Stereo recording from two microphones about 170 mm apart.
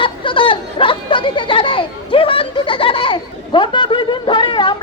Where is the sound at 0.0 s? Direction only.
30° left (ahead or behind).